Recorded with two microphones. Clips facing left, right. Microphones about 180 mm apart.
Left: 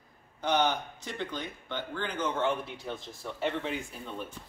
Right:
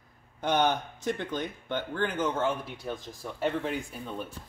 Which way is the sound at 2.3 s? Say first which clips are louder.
Even; centre (ahead or behind).